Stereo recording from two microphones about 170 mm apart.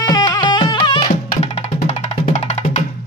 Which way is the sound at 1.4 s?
40° left (ahead or behind).